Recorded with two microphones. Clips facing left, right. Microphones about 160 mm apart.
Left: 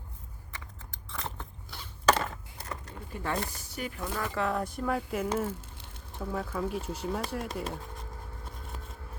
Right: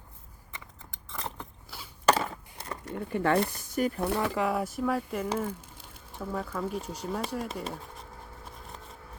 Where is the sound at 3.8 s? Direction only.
40° right (ahead or behind).